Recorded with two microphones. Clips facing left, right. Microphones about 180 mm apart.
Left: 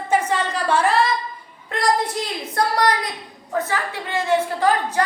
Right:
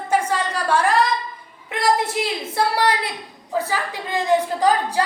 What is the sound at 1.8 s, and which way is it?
Speech, 25° right (ahead or behind).